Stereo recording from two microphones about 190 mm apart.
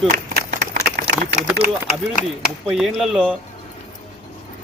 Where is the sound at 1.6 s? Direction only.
40° left (ahead or behind).